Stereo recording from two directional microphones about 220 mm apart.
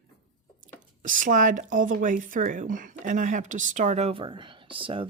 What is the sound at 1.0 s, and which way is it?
Speech, 35° right (ahead or behind).